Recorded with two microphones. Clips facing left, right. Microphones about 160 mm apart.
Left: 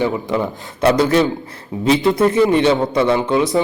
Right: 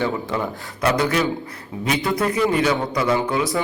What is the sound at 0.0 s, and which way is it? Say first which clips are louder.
A man's voice: left 4 dB; 20° left (ahead or behind).